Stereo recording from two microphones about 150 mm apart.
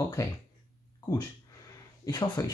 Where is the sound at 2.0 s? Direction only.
25° left (ahead or behind).